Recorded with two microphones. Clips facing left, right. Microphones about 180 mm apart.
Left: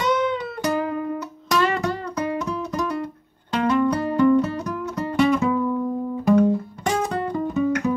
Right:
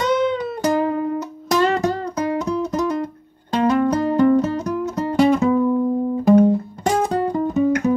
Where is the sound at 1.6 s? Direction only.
40° right (ahead or behind).